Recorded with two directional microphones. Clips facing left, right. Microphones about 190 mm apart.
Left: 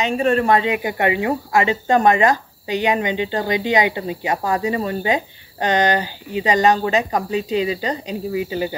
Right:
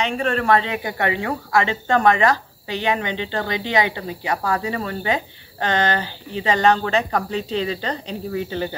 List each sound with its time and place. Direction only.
0.0 s a woman's voice: 15° left (ahead or behind)